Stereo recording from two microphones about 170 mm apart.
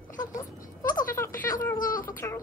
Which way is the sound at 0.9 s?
15° left (ahead or behind).